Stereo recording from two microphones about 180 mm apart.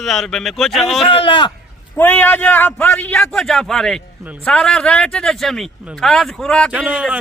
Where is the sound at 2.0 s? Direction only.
10° left (ahead or behind).